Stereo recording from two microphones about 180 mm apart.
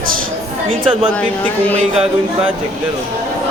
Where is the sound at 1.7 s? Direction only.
35° right (ahead or behind).